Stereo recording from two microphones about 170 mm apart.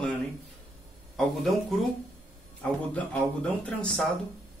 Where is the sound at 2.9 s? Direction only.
5° left (ahead or behind).